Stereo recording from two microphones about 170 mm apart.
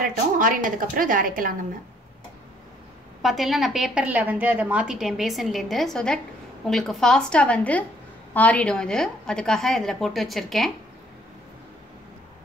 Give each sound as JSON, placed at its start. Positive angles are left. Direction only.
{"t": 0.0, "sound": "a woman's voice", "side_deg": -55}
{"t": 3.2, "sound": "a woman's voice", "side_deg": 0}